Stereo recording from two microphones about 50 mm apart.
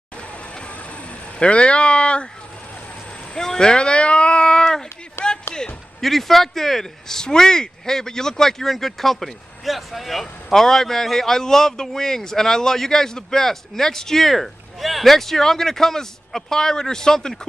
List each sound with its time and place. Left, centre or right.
1.4 s speech: left
3.3 s a sound: centre
5.2 s music: left
5.9 s speech: centre